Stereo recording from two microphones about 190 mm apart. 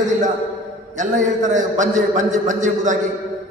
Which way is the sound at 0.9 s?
40° right (ahead or behind).